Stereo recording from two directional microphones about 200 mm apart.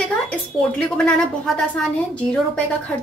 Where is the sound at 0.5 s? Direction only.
Centre (ahead or behind).